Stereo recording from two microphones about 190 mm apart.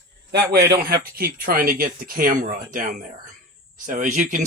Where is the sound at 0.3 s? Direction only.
60° right (ahead or behind).